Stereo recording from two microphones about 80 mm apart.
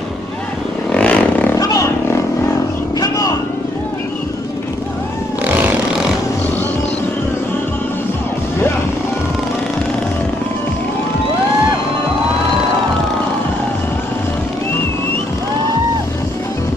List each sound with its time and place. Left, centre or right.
0.9 s vehicle: centre
1.6 s wild animals: left
3.0 s vehicle: left